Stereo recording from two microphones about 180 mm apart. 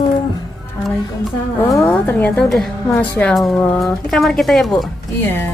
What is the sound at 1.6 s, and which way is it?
A woman's voice, 15° left (ahead or behind).